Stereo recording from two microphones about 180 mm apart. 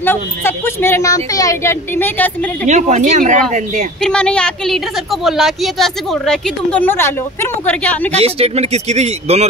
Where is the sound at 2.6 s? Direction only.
40° right (ahead or behind).